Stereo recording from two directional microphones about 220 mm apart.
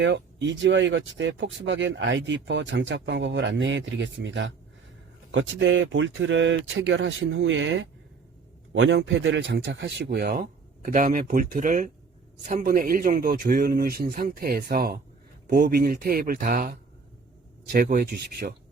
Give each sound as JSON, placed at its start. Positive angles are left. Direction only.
{"t": 0.0, "sound": "speech", "side_deg": -55}